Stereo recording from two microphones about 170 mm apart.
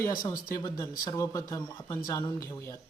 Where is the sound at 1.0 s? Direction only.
20° left (ahead or behind).